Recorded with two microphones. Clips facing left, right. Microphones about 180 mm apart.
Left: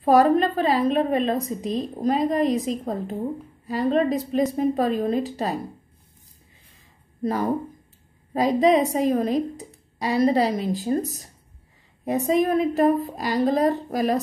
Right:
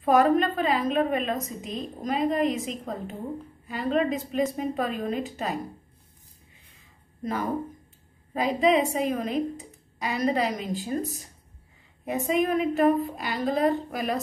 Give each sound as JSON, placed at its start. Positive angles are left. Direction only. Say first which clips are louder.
{"t": 0.0, "sound": "a woman's voice", "louder": "left 3 dB", "side_deg": 35}
{"t": 7.2, "sound": "a woman's voice", "louder": "left 5 dB", "side_deg": 35}